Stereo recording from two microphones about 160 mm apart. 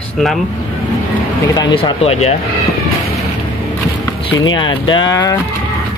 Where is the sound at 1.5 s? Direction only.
25° left (ahead or behind).